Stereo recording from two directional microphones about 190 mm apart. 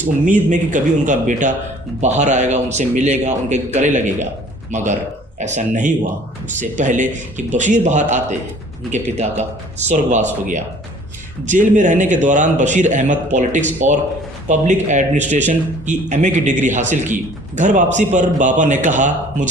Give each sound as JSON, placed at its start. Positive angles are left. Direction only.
{"t": 0.5, "sound": "a man's voice", "side_deg": -40}